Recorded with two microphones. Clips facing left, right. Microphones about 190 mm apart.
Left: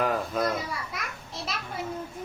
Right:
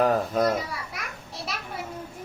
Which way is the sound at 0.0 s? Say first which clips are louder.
Right 4 dB; 40° right (ahead or behind).